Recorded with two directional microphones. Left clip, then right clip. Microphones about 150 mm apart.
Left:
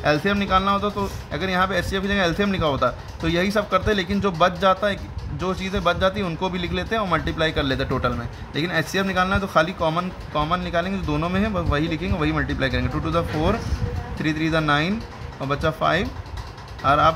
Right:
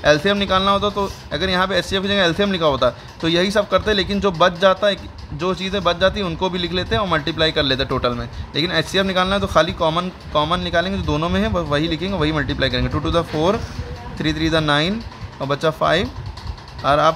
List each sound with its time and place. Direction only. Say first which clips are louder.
0.0 s a man's voice: right 5 dB; 35° right (ahead or behind)